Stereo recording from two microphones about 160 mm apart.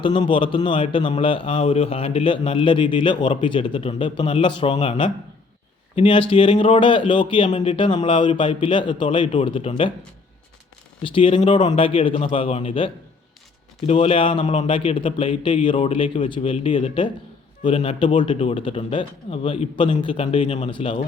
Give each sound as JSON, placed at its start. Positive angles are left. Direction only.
{"t": 0.0, "sound": "a man's voice", "side_deg": 30}
{"t": 11.0, "sound": "a man's voice", "side_deg": 35}